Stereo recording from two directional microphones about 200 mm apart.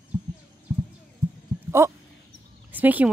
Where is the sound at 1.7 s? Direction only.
15° right (ahead or behind).